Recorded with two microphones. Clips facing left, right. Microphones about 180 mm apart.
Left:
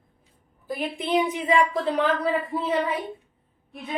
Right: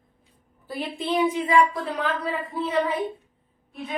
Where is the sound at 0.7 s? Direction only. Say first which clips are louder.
Left 1 dB; 15° left (ahead or behind).